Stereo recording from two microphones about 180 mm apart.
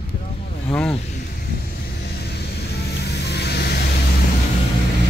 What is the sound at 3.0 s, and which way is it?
Vehicle, 70° left (ahead or behind).